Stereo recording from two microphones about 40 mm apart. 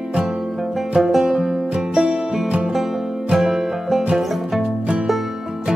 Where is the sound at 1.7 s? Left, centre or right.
Right.